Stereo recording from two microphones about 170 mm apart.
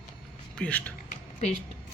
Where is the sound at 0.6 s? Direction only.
10° left (ahead or behind).